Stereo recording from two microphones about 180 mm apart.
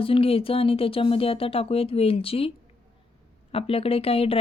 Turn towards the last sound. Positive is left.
turn(degrees=30)  # may be behind; listen again after turning